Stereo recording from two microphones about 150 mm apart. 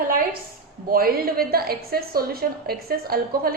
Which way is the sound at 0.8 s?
85° right.